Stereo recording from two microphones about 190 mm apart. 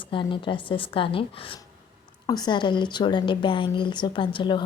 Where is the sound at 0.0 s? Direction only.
25° left (ahead or behind).